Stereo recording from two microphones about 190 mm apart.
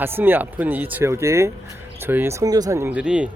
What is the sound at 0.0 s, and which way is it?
A man's voice, 10° right (ahead or behind).